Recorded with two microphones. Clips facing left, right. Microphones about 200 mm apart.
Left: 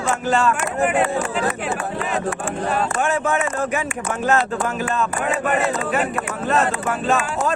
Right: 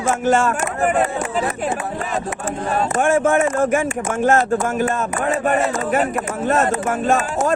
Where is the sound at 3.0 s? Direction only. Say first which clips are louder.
Right 5 dB; 45° right (ahead or behind).